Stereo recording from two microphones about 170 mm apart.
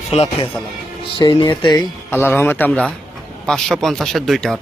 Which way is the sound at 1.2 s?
30° left (ahead or behind).